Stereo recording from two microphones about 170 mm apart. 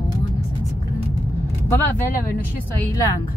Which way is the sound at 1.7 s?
10° left (ahead or behind).